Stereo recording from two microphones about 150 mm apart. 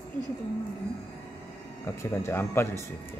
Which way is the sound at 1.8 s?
20° left (ahead or behind).